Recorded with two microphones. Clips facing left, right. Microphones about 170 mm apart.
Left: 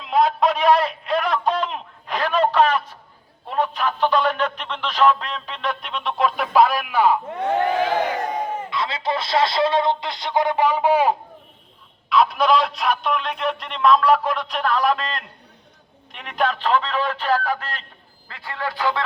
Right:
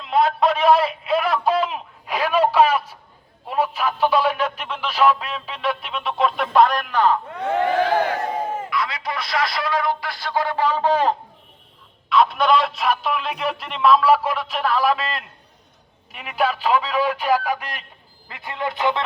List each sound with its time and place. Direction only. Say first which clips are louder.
0.0 s a sound: even; centre (ahead or behind)
3.5 s radio: even; 5° right (ahead or behind)
8.3 s crowd: even; 5° right (ahead or behind)
8.7 s speech: left 2 dB; 25° left (ahead or behind); by 11.2 s 10° left (ahead or behind)
12.0 s a man's voice: even; centre (ahead or behind); by 19.0 s 20° right (ahead or behind)